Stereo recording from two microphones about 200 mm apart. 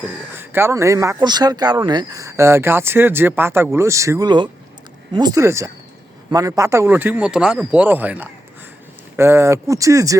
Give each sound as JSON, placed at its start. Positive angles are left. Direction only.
{"t": 0.3, "sound": "speech", "side_deg": -10}